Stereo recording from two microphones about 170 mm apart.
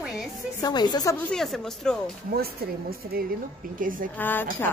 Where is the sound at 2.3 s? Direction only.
65° right (ahead or behind).